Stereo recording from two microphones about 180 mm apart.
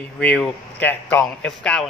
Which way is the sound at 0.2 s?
5° left (ahead or behind).